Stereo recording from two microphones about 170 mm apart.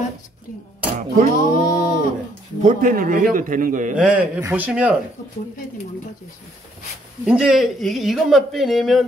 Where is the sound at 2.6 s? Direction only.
50° right (ahead or behind).